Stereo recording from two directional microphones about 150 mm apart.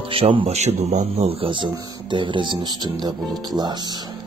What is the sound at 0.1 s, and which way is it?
Speech, 35° right (ahead or behind).